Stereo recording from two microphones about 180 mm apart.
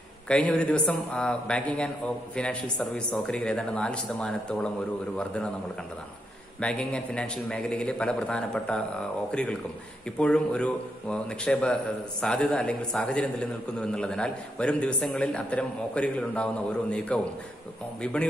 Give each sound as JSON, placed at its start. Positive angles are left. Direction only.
{"t": 0.3, "sound": "speech", "side_deg": 5}
{"t": 6.6, "sound": "speech", "side_deg": 5}